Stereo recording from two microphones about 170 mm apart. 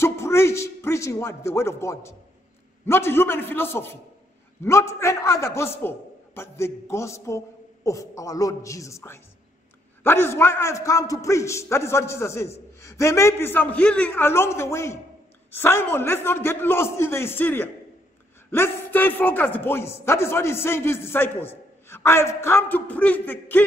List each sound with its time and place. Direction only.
0.0 s a man's voice: 15° left (ahead or behind)